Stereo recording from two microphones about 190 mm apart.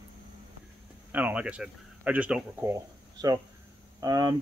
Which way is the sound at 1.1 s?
10° right (ahead or behind).